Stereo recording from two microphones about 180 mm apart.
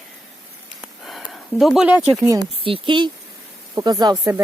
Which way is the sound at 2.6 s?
30° right (ahead or behind).